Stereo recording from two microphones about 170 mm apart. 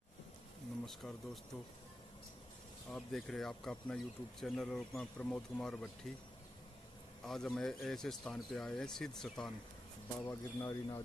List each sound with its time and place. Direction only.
0.8 s speech: centre (ahead or behind)
2.9 s speech: 5° left (ahead or behind)
7.2 s speech: 5° left (ahead or behind)
10.2 s speech: 20° left (ahead or behind)